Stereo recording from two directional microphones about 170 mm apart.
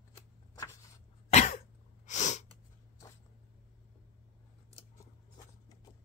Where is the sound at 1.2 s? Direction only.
40° left (ahead or behind).